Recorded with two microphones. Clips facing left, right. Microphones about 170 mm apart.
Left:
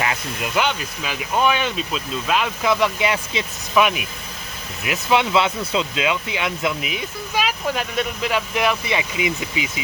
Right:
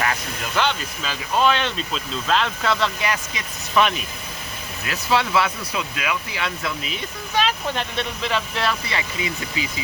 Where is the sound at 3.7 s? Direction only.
10° left (ahead or behind).